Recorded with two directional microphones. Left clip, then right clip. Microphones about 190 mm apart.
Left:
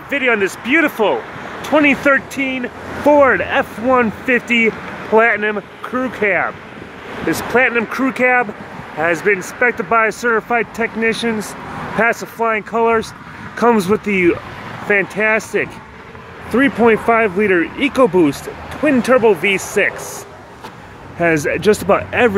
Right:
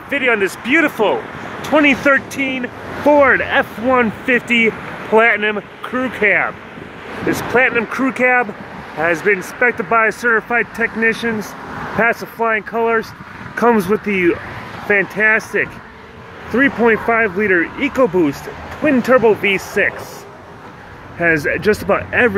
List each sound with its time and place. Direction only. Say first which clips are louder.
0.1 s speech: even; 5° left (ahead or behind)
7.5 s speech: even; 15° left (ahead or behind)
21.2 s speech: even; 20° left (ahead or behind)